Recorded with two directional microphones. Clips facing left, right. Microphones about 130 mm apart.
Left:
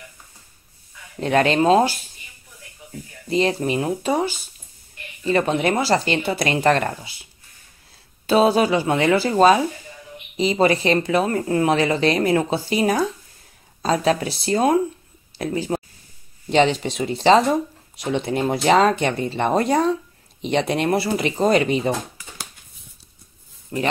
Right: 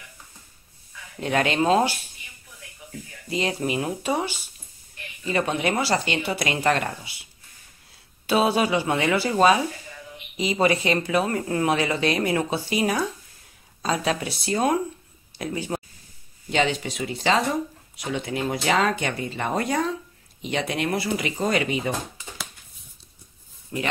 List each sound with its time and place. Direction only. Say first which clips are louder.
1.2 s speech: left 5 dB; 35° left (ahead or behind)
3.3 s speech: left 6 dB; 35° left (ahead or behind)
5.6 s speech: left 4 dB; 40° left (ahead or behind)
6.5 s speech: left 5 dB; 40° left (ahead or behind)
8.3 s speech: left 5 dB; 30° left (ahead or behind)
23.7 s speech: left 4 dB; 40° left (ahead or behind)